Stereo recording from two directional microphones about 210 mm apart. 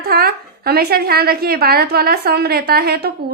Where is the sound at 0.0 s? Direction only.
50° right (ahead or behind).